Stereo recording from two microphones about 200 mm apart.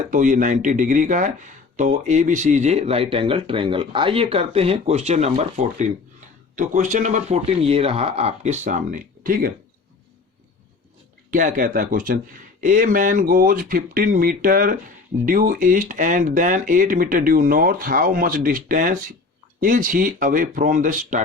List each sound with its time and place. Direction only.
0.1 s speech: 40° right (ahead or behind)
11.3 s speech: 40° right (ahead or behind)